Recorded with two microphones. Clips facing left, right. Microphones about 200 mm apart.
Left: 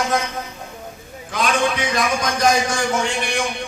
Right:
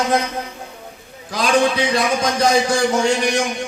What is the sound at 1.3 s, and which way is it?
A man's voice, 35° right (ahead or behind).